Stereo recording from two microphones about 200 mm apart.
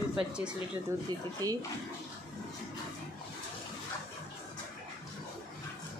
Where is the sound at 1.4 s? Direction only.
20° right (ahead or behind).